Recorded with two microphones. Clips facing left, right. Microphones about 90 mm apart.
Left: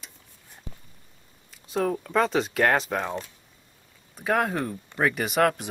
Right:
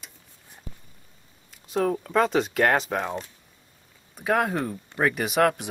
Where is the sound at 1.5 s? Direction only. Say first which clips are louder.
Right 1 dB; centre (ahead or behind).